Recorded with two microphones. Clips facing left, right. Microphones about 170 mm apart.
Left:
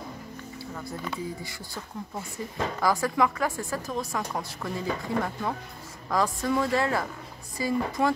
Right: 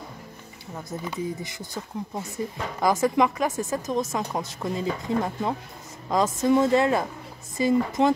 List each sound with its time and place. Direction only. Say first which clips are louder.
0.7 s speech: right 4 dB; 20° right (ahead or behind)